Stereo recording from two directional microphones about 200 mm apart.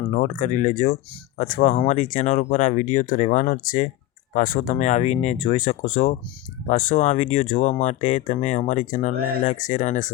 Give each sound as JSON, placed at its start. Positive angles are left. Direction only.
{"t": 0.1, "sound": "speech", "side_deg": 35}